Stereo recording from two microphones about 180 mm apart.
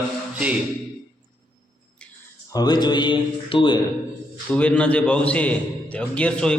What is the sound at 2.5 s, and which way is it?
Speech, 20° left (ahead or behind).